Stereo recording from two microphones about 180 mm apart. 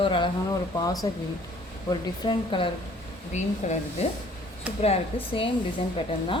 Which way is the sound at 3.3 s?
40° left (ahead or behind).